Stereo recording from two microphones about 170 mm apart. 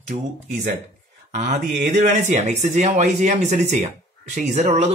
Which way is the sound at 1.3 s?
45° right (ahead or behind).